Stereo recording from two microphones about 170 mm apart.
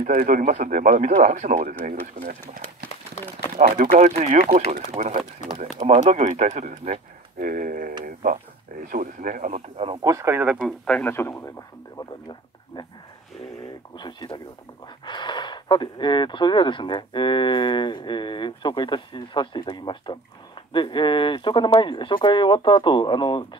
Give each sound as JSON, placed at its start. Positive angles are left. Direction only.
{"t": 0.0, "sound": "speech", "side_deg": -55}
{"t": 10.0, "sound": "speech", "side_deg": -15}
{"t": 10.9, "sound": "a man's voice", "side_deg": 10}
{"t": 12.0, "sound": "a sound", "side_deg": 25}
{"t": 13.9, "sound": "speech", "side_deg": 25}